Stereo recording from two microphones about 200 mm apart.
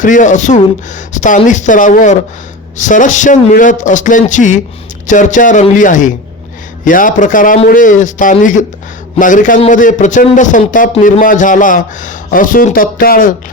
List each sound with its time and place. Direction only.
0.0 s a man's voice: 40° left (ahead or behind)